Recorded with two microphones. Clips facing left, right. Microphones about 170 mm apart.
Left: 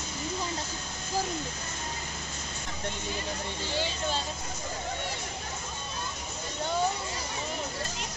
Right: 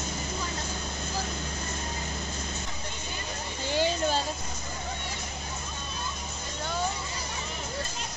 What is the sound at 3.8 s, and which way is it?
Vehicle, 45° right (ahead or behind).